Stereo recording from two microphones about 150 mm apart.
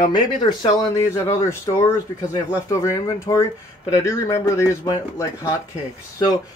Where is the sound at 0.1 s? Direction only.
30° left (ahead or behind).